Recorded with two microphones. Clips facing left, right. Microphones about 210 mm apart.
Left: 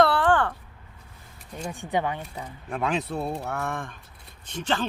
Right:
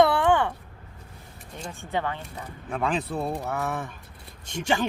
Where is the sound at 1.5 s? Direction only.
15° left (ahead or behind).